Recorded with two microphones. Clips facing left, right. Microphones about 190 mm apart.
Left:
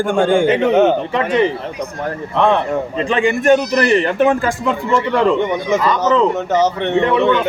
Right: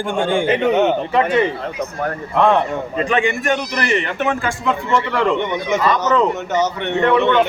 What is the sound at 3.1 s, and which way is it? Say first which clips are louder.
A man's voice: left 6 dB; 35° left (ahead or behind).